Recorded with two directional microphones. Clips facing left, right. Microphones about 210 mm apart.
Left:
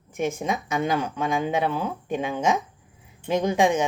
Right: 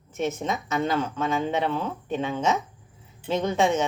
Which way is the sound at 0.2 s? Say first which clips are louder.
Left 1 dB; 10° left (ahead or behind).